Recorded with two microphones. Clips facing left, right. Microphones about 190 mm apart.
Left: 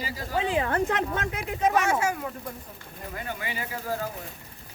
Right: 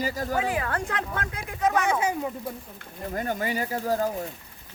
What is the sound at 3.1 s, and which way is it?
Speech, 45° right (ahead or behind).